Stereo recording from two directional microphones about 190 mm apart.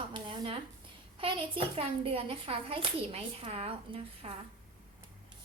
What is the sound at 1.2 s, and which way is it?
A woman's voice, 30° right (ahead or behind).